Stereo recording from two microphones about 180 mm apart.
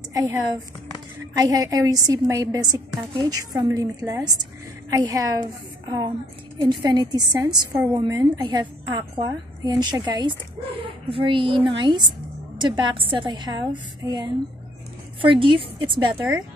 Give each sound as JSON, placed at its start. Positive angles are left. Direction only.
{"t": 0.1, "sound": "speech", "side_deg": -20}
{"t": 1.4, "sound": "a woman's voice", "side_deg": -20}